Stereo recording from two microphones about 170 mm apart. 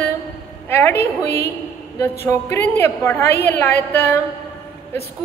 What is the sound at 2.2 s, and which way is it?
A woman's voice, 15° left (ahead or behind).